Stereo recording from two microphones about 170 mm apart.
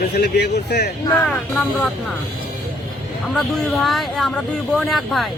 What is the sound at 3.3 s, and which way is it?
Speech, centre (ahead or behind).